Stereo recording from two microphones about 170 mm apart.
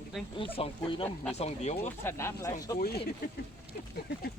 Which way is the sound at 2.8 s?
70° left (ahead or behind).